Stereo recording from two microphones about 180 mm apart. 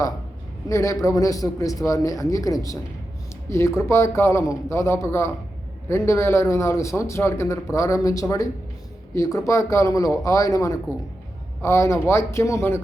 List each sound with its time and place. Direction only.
0.7 s a man's voice: 15° left (ahead or behind)